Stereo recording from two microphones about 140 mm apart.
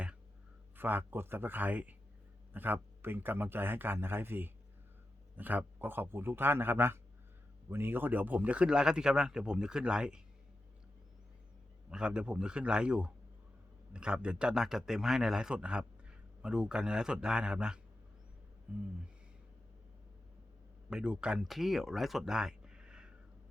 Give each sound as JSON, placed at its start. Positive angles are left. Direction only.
{"t": 0.8, "sound": "a man's voice", "side_deg": -15}
{"t": 11.9, "sound": "a man's voice", "side_deg": -5}
{"t": 20.9, "sound": "speech", "side_deg": -5}